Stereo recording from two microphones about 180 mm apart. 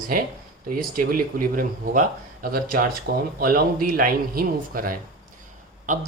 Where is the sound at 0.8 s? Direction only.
50° right (ahead or behind).